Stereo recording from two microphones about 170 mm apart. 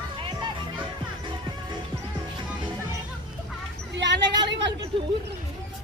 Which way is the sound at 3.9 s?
90° right.